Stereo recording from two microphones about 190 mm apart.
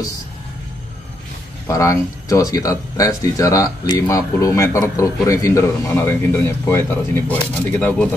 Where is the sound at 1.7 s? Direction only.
15° left (ahead or behind).